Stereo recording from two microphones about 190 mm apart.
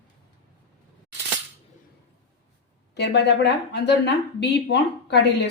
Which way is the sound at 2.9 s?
65° left (ahead or behind).